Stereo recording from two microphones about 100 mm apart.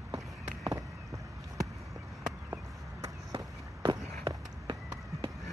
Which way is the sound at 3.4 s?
40° right (ahead or behind).